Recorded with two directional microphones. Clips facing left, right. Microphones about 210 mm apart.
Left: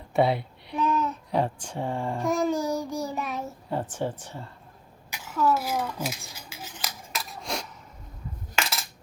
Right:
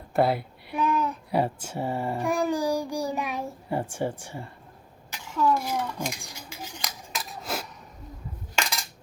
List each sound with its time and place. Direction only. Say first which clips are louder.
0.1 s a child's voice: even; centre (ahead or behind)
5.1 s a sound: even; 5° left (ahead or behind)
6.2 s scissors: right 2 dB; 5° left (ahead or behind)